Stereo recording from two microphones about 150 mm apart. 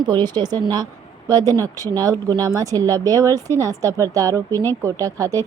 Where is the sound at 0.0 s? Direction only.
30° right (ahead or behind).